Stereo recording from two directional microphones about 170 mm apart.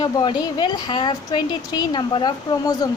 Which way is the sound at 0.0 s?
25° left (ahead or behind).